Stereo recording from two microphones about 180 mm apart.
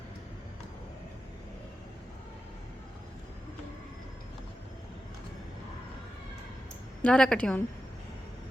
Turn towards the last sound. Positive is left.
turn(degrees=5)  # may be behind; listen again after turning